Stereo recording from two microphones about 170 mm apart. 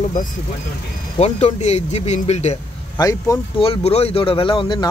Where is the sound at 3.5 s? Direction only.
35° left (ahead or behind).